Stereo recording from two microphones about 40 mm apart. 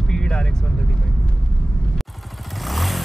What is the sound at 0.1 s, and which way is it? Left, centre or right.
Vehicle, centre.